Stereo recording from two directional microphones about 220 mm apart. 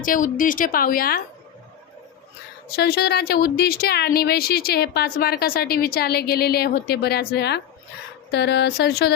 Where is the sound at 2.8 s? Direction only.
45° left (ahead or behind).